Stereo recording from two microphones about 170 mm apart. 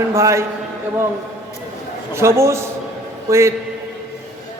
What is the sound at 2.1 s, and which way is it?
A man's voice, 15° right (ahead or behind).